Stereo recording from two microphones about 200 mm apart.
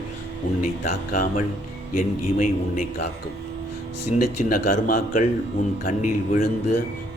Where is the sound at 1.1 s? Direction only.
45° left (ahead or behind).